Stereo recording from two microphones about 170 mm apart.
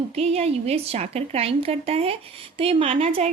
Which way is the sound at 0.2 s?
35° right (ahead or behind).